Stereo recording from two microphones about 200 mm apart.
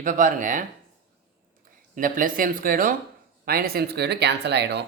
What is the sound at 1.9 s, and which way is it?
Speech, 45° right (ahead or behind).